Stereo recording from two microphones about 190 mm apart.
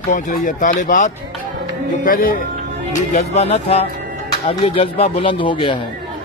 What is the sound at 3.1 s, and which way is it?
Speech, 35° left (ahead or behind).